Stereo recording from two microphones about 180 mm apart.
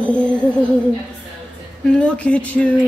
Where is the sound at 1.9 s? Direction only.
5° left (ahead or behind).